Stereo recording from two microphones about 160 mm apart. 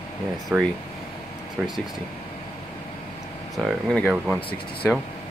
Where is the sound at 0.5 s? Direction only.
10° right (ahead or behind).